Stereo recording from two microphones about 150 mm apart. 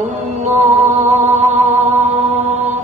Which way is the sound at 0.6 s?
50° right (ahead or behind).